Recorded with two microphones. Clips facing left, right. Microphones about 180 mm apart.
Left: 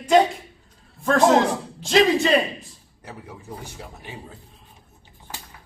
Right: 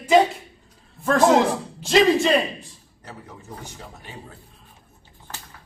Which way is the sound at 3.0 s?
10° left (ahead or behind).